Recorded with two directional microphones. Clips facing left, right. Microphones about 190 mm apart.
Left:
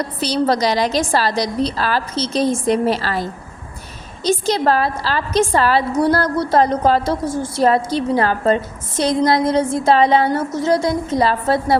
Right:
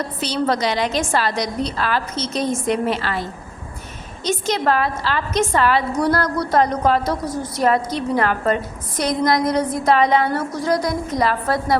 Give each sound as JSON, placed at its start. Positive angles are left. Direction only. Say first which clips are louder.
{"t": 0.2, "sound": "a woman's voice", "louder": "left 3 dB", "side_deg": 35}